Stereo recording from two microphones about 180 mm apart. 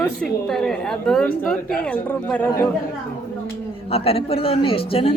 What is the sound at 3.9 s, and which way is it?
A man's voice, 35° left (ahead or behind).